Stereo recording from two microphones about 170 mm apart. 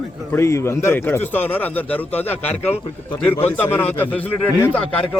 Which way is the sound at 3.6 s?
10° left (ahead or behind).